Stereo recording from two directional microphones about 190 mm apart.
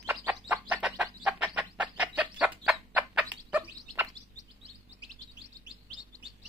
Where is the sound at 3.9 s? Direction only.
15° right (ahead or behind).